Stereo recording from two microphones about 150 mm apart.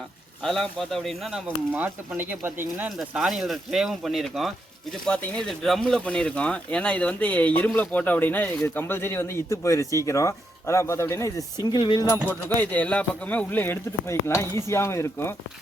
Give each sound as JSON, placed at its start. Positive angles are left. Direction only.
{"t": 0.4, "sound": "speech", "side_deg": 0}
{"t": 11.6, "sound": "speech", "side_deg": 30}
{"t": 12.3, "sound": "speech", "side_deg": 10}